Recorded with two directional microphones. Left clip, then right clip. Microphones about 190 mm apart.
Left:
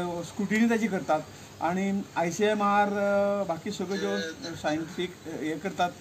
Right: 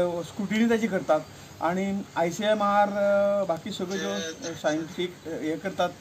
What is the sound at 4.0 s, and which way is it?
Speech, 60° right (ahead or behind).